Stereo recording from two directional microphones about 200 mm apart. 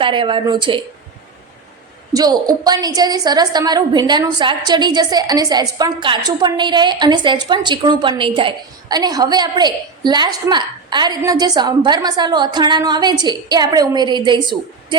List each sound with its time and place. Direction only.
0.0 s a woman's voice: 25° right (ahead or behind)
2.1 s a woman's voice: 20° right (ahead or behind)